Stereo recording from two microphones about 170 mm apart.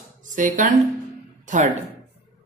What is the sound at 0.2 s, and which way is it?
Speech, 50° right (ahead or behind).